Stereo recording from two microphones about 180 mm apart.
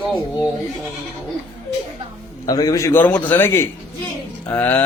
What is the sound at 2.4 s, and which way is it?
A man's voice, 20° left (ahead or behind).